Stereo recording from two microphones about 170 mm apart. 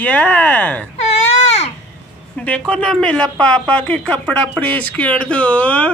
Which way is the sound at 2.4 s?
5° left (ahead or behind).